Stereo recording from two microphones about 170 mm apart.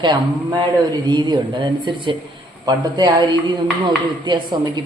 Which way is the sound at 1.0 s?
25° right (ahead or behind).